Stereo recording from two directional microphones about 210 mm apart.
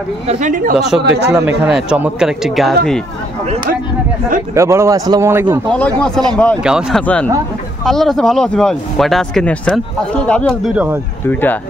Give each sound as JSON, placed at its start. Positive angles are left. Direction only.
{"t": 0.3, "sound": "speech", "side_deg": -35}
{"t": 0.7, "sound": "speech", "side_deg": 0}
{"t": 1.0, "sound": "a man's voice", "side_deg": -55}
{"t": 1.7, "sound": "speech", "side_deg": -5}
{"t": 4.6, "sound": "a man's voice", "side_deg": -15}
{"t": 5.9, "sound": "speech", "side_deg": 5}